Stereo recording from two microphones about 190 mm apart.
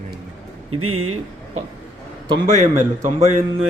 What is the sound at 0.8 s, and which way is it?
Speech, 90° right.